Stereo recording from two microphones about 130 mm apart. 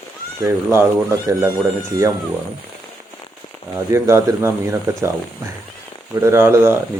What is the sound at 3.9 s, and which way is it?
Speech, 20° right (ahead or behind).